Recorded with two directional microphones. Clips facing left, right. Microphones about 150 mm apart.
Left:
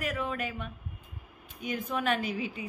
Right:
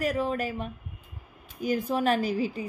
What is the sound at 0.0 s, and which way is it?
A woman's voice, 35° right (ahead or behind).